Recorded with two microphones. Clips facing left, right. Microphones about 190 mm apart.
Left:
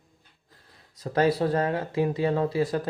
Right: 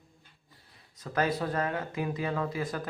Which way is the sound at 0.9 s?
35° left (ahead or behind).